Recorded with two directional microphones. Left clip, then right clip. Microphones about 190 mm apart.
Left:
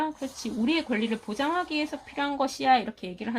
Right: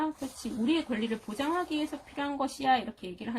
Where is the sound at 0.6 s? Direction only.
25° left (ahead or behind).